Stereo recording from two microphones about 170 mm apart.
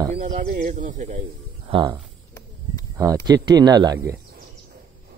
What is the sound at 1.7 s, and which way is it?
Speech, 30° right (ahead or behind).